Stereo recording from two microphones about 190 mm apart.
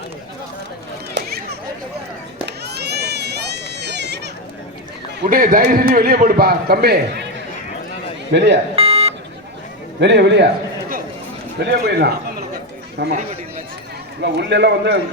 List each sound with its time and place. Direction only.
1.1 s a sound: 55° right (ahead or behind)
2.5 s goat: 60° right (ahead or behind)
5.3 s a man's voice: 45° right (ahead or behind)
8.3 s speech: 65° right (ahead or behind)
8.7 s a sound: 30° right (ahead or behind)
10.0 s a man's voice: 65° right (ahead or behind)
11.6 s a man's voice: 60° right (ahead or behind)
14.2 s a man's voice: 65° right (ahead or behind)